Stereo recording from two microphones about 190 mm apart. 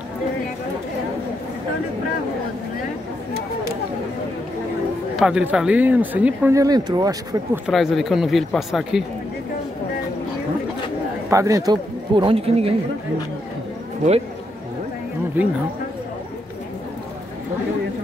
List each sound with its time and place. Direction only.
5.1 s speech: 5° right (ahead or behind); by 7.6 s 20° right (ahead or behind)
7.6 s speech: centre (ahead or behind)
11.2 s speech: 15° right (ahead or behind)
15.4 s speech: 10° right (ahead or behind)